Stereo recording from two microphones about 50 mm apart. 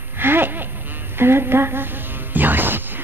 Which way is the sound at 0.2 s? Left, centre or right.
Right.